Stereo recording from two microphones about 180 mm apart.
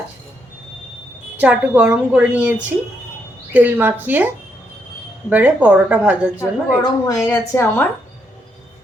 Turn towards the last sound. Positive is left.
turn(degrees=15)  # may be behind; listen again after turning